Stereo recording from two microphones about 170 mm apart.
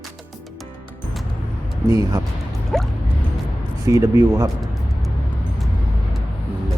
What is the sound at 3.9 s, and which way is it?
Speech, 15° right (ahead or behind).